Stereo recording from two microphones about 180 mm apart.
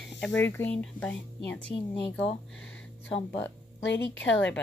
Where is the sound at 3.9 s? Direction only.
90° left.